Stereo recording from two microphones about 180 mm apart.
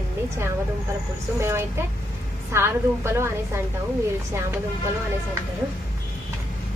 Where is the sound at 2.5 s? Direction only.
15° right (ahead or behind).